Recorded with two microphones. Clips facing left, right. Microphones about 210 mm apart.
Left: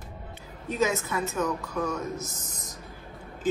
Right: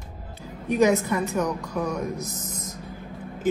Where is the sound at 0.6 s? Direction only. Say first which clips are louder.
Right 7 dB; 15° right (ahead or behind).